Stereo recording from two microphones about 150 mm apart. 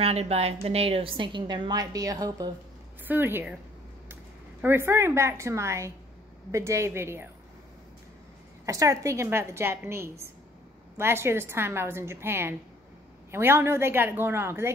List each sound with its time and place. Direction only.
0.0 s a woman's voice: 45° right (ahead or behind); by 2.5 s 25° right (ahead or behind)
3.1 s a woman's voice: 15° right (ahead or behind)
8.6 s a woman's voice: 20° right (ahead or behind)